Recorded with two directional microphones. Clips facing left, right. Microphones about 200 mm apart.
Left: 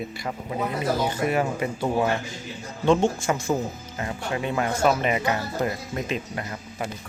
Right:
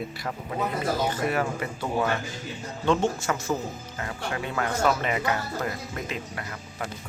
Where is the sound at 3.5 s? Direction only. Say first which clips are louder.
Left 3 dB; 20° left (ahead or behind).